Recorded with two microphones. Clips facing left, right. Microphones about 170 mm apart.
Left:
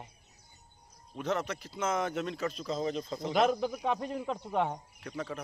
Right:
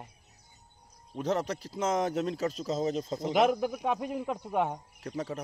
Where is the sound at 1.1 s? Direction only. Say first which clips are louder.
Right 3 dB; 40° right (ahead or behind).